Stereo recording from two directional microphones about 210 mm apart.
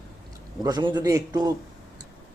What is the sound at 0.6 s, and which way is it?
Speech, 20° right (ahead or behind).